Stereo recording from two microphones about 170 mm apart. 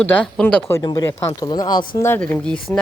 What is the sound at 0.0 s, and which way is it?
Speech, 10° left (ahead or behind).